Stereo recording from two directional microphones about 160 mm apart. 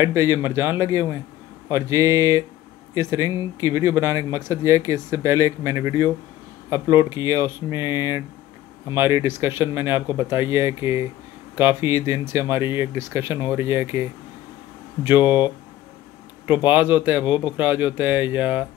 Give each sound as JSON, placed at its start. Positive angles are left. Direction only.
{"t": 0.0, "sound": "speech", "side_deg": -15}
{"t": 1.7, "sound": "a sound", "side_deg": -20}
{"t": 2.9, "sound": "speech", "side_deg": -20}
{"t": 15.2, "sound": "speech", "side_deg": 30}
{"t": 16.6, "sound": "speech", "side_deg": -10}